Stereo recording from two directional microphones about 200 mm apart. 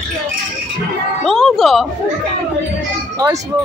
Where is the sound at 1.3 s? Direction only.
Centre (ahead or behind).